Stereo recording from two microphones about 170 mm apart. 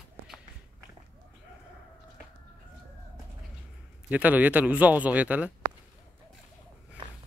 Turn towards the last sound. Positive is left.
turn(degrees=-10)  # may be behind; listen again after turning